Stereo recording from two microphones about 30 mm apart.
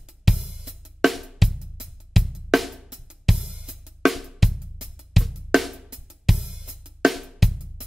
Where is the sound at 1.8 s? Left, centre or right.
Right.